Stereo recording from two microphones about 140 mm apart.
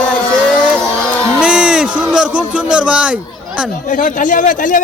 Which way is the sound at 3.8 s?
70° left (ahead or behind).